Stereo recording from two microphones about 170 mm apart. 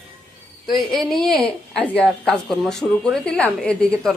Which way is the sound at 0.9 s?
5° left (ahead or behind).